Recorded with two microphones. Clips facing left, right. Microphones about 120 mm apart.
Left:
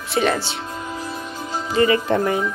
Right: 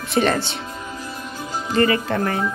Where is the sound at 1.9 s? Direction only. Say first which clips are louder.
Left 3 dB; 20° left (ahead or behind).